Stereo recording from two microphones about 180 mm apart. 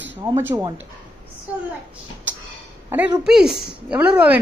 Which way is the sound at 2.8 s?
10° right (ahead or behind).